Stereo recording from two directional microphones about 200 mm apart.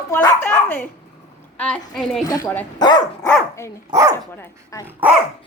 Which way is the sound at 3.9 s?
15° right (ahead or behind).